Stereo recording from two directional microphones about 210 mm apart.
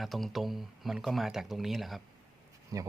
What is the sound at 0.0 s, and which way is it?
Speech, centre (ahead or behind).